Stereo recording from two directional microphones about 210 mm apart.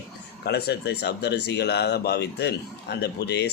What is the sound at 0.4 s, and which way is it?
A man's voice, 50° left (ahead or behind).